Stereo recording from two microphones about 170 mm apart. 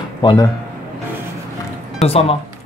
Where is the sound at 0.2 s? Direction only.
25° left (ahead or behind).